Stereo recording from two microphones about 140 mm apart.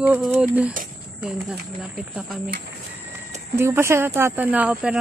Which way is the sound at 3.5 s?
15° right (ahead or behind).